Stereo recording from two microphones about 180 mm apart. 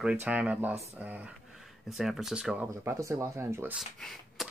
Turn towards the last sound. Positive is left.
turn(degrees=0)  # may be behind; listen again after turning